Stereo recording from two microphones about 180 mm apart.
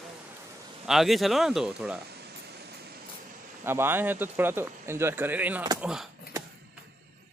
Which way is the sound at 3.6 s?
15° right (ahead or behind).